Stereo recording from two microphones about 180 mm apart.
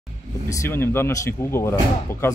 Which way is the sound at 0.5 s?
15° left (ahead or behind).